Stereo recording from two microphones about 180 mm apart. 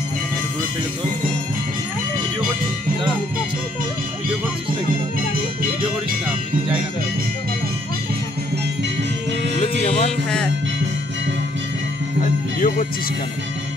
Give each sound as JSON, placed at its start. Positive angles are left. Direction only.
{"t": 9.6, "sound": "music", "side_deg": 30}
{"t": 12.5, "sound": "music", "side_deg": 50}